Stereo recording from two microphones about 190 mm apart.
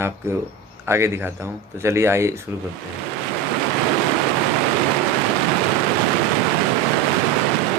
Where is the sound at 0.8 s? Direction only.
15° right (ahead or behind).